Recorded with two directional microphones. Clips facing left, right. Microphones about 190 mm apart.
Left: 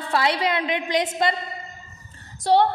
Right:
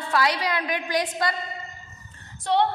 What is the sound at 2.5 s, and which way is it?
Speech, 35° left (ahead or behind).